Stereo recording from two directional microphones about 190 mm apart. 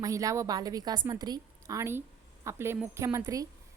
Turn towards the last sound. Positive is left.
turn(degrees=-15)  # may be behind; listen again after turning